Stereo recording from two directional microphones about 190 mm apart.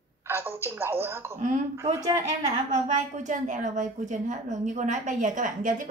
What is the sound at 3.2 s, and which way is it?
A woman's voice, 40° right (ahead or behind).